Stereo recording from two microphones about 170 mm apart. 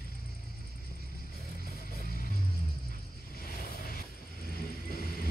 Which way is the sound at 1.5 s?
60° left (ahead or behind).